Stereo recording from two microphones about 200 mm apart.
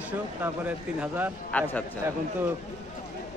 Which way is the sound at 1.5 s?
5° left (ahead or behind).